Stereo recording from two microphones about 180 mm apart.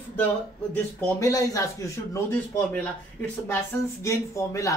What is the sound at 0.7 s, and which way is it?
Speech, 15° left (ahead or behind).